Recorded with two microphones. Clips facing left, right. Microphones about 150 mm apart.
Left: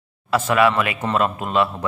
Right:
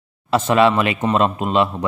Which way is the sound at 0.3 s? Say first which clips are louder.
Right 2 dB; 25° right (ahead or behind).